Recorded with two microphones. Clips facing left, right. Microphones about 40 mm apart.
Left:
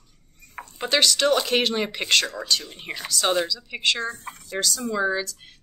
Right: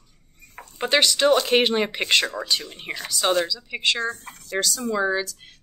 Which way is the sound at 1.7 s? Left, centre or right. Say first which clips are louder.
Right 1 dB; centre.